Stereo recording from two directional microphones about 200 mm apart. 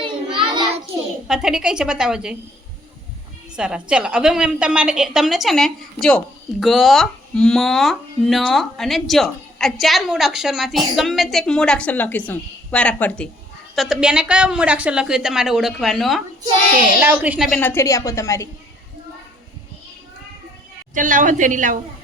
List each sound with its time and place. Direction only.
0.4 s a sound: 20° right (ahead or behind)
1.3 s a woman's voice: 5° right (ahead or behind)
3.5 s a woman's voice: 5° right (ahead or behind)
17.6 s a woman's voice: 10° left (ahead or behind)
20.9 s a woman's voice: 40° right (ahead or behind)